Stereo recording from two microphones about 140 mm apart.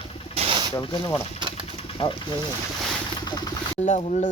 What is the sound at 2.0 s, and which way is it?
Speech, 40° left (ahead or behind).